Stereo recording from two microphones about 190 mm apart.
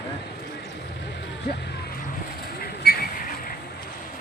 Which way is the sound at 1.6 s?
60° left (ahead or behind).